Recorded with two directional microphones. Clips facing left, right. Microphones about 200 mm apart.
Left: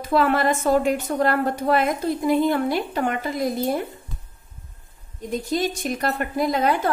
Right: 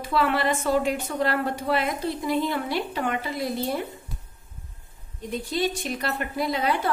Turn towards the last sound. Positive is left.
turn(degrees=45)  # may be behind; listen again after turning